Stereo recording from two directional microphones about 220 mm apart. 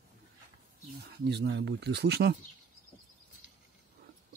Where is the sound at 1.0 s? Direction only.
50° right (ahead or behind).